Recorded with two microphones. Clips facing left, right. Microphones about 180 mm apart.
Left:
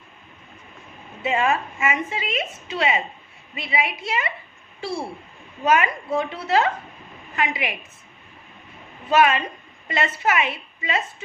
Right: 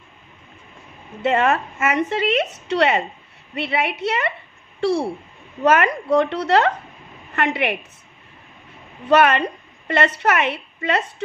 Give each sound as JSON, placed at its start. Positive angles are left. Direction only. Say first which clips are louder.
{"t": 1.2, "sound": "a woman's voice", "louder": "right 4 dB", "side_deg": -70}
{"t": 9.1, "sound": "a woman's voice", "louder": "right 3 dB", "side_deg": -70}